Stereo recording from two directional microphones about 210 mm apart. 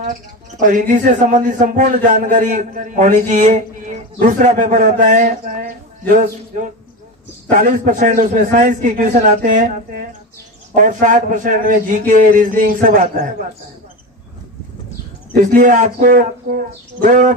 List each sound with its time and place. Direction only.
0.6 s a man's voice: 40° right (ahead or behind)
15.3 s a man's voice: 40° right (ahead or behind)